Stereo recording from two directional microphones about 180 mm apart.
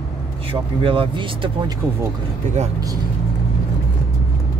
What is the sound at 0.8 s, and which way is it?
Speech, 30° right (ahead or behind).